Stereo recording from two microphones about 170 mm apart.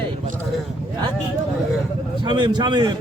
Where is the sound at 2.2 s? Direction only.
25° right (ahead or behind).